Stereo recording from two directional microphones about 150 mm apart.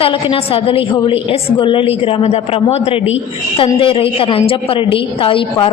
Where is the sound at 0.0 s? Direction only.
35° left (ahead or behind).